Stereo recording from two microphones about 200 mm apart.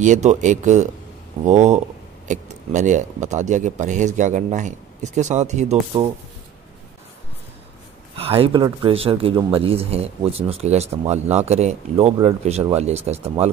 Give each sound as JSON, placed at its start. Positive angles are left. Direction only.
{"t": 0.0, "sound": "speech", "side_deg": -35}
{"t": 8.2, "sound": "speech", "side_deg": -30}